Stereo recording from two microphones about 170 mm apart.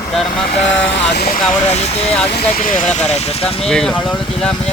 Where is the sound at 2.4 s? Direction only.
55° left (ahead or behind); by 3.5 s 40° left (ahead or behind).